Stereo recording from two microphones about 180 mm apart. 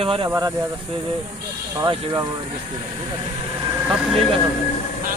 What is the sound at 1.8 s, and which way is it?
Speech, 20° right (ahead or behind).